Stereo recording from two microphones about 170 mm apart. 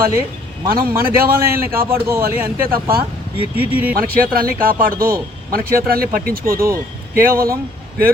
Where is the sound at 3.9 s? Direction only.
60° right (ahead or behind).